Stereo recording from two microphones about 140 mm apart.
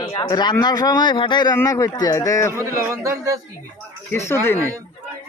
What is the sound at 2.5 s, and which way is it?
Speech, 20° right (ahead or behind).